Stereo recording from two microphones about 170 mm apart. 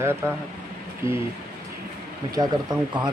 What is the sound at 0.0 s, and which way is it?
Speech, 15° right (ahead or behind).